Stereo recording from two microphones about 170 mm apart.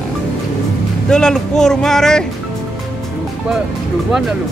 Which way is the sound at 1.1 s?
5° left (ahead or behind).